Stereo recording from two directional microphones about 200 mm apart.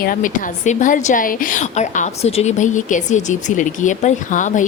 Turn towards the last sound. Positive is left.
turn(degrees=40)  # may be behind; listen again after turning